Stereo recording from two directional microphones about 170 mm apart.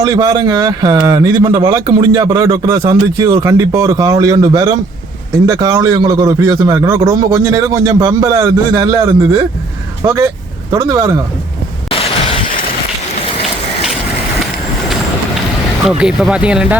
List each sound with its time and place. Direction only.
0.0 s speech: 20° right (ahead or behind)
11.9 s a sound: 35° left (ahead or behind)
15.9 s speech: 5° right (ahead or behind)